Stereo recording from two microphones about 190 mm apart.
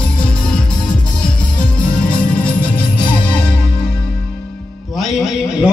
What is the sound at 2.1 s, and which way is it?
Music, 5° left (ahead or behind).